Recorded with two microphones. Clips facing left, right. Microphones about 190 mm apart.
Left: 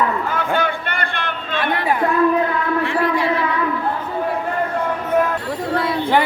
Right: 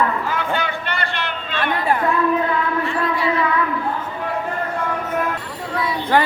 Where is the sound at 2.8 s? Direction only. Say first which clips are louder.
Left 3 dB; 70° left (ahead or behind).